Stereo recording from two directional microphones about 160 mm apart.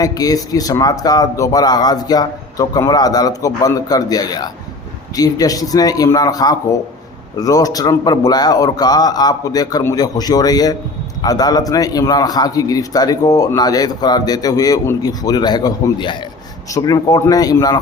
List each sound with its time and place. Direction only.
0.0 s a man's voice: 20° left (ahead or behind)